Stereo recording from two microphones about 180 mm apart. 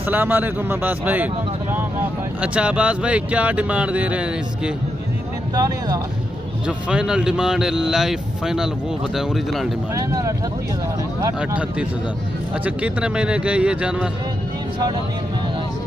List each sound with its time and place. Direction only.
0.1 s speech: 10° right (ahead or behind)
6.9 s speech: 5° right (ahead or behind)
9.9 s speech: 15° right (ahead or behind)
12.6 s speech: 5° right (ahead or behind)